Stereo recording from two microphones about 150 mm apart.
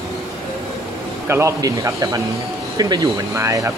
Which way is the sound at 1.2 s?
20° right (ahead or behind).